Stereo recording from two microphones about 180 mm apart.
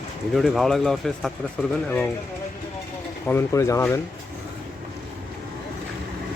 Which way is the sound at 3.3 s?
15° left (ahead or behind).